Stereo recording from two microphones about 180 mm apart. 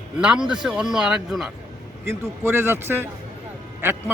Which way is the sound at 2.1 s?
15° right (ahead or behind).